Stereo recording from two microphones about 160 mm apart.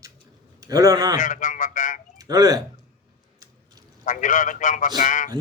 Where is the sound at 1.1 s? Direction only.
55° left (ahead or behind).